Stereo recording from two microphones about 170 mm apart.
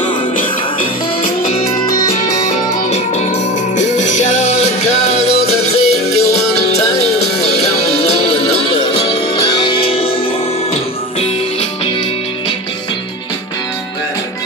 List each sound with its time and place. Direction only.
2.1 s music: 40° left (ahead or behind)